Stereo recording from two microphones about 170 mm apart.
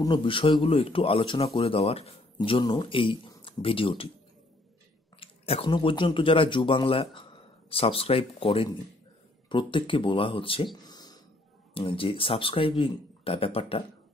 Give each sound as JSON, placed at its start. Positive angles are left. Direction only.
{"t": 0.0, "sound": "speech", "side_deg": 30}
{"t": 5.2, "sound": "speech", "side_deg": 35}
{"t": 10.8, "sound": "a sound", "side_deg": 25}
{"t": 11.7, "sound": "speech", "side_deg": 30}